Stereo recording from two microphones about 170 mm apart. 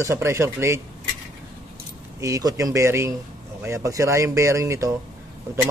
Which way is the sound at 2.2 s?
20° right (ahead or behind).